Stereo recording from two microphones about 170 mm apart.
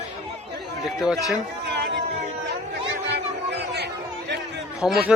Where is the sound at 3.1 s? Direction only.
80° right.